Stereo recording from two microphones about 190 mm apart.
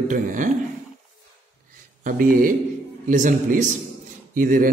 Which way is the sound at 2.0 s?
45° right (ahead or behind).